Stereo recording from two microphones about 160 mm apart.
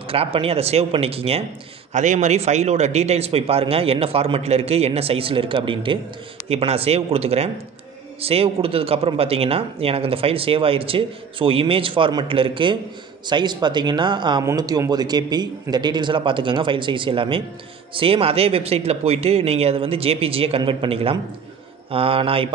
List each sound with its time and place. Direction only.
0.1 s speech: 35° right (ahead or behind)